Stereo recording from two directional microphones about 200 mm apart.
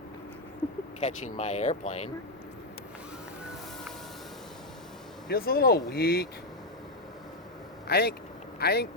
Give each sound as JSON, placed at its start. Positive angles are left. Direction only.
{"t": 0.9, "sound": "speech", "side_deg": 35}
{"t": 5.3, "sound": "speech", "side_deg": 50}
{"t": 7.9, "sound": "speech", "side_deg": 50}